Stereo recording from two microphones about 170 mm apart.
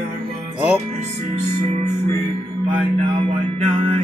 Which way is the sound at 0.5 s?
10° right (ahead or behind).